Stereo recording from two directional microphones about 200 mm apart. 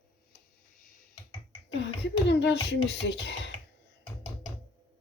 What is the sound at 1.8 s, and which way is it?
Speech, 60° left (ahead or behind).